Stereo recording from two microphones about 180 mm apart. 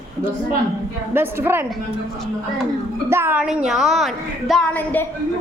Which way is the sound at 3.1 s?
10° right (ahead or behind).